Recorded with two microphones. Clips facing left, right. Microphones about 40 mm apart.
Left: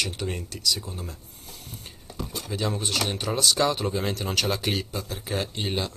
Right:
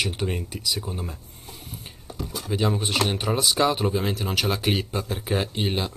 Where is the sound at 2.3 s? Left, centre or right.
Centre.